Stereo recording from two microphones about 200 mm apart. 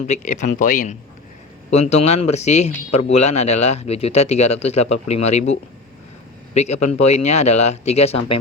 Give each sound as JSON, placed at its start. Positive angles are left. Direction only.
{"t": 0.1, "sound": "speech", "side_deg": 40}